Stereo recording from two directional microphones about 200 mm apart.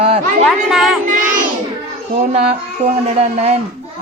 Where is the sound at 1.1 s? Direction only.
40° right (ahead or behind).